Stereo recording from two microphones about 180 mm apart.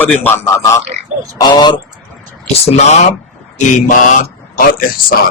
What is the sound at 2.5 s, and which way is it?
Speech, 35° left (ahead or behind).